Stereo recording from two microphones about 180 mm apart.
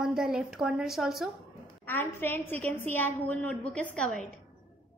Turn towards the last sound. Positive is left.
turn(degrees=5)  # may be behind; listen again after turning